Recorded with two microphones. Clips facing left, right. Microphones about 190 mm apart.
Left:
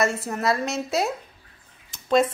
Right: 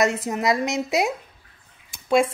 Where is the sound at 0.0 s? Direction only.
15° right (ahead or behind).